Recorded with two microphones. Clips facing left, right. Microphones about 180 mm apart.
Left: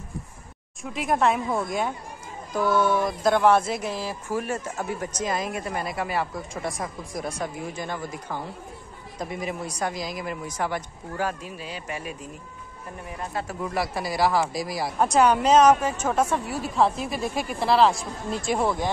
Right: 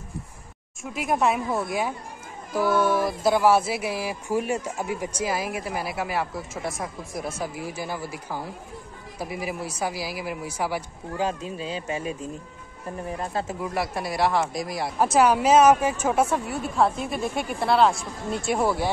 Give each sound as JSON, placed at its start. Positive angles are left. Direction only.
{"t": 0.9, "sound": "speech", "side_deg": 0}
{"t": 11.2, "sound": "speech", "side_deg": -25}
{"t": 13.2, "sound": "speech", "side_deg": -30}
{"t": 13.6, "sound": "speech", "side_deg": 0}